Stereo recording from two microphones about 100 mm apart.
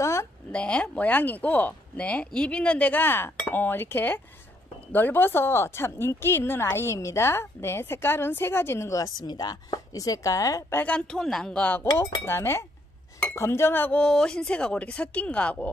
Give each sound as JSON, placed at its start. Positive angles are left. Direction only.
{"t": 0.0, "sound": "a sound", "side_deg": 30}
{"t": 0.5, "sound": "speech", "side_deg": 10}
{"t": 10.8, "sound": "speech", "side_deg": 10}
{"t": 13.9, "sound": "speech", "side_deg": 10}